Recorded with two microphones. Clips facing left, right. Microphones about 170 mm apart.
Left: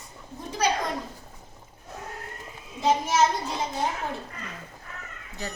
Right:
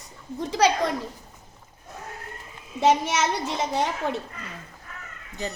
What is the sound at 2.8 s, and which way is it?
Speech, 80° right.